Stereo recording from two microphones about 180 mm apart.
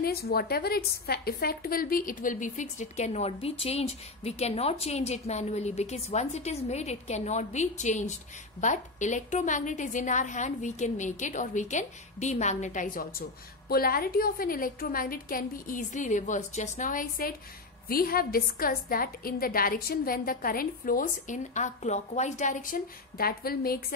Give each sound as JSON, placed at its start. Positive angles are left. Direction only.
{"t": 0.0, "sound": "a woman's voice", "side_deg": 60}